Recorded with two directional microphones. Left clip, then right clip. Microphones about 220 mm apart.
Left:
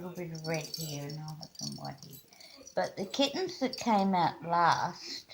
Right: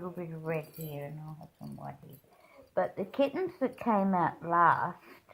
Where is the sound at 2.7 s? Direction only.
50° right (ahead or behind).